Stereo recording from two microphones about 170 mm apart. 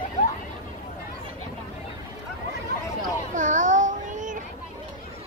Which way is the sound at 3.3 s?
50° right (ahead or behind).